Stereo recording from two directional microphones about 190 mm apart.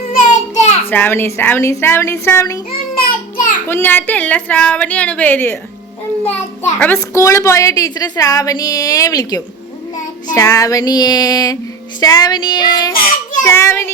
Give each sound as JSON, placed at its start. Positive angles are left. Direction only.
{"t": 0.1, "sound": "a sound", "side_deg": 40}
{"t": 0.9, "sound": "a woman's voice", "side_deg": 10}
{"t": 2.7, "sound": "child singing", "side_deg": 50}
{"t": 3.7, "sound": "a woman's voice", "side_deg": 10}
{"t": 6.6, "sound": "a woman's voice", "side_deg": 10}
{"t": 10.3, "sound": "child singing", "side_deg": 15}
{"t": 13.4, "sound": "a woman's voice", "side_deg": 15}